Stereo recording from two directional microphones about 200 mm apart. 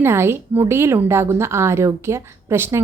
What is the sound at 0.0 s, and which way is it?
A woman's voice, 10° right (ahead or behind).